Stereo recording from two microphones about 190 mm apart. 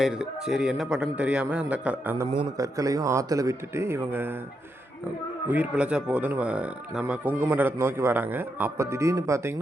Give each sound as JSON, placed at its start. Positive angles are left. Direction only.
{"t": 0.0, "sound": "a man's voice", "side_deg": -5}
{"t": 2.3, "sound": "speech", "side_deg": -20}
{"t": 5.5, "sound": "speech", "side_deg": -5}